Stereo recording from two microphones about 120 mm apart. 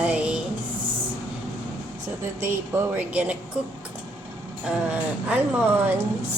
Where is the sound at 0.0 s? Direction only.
10° right (ahead or behind).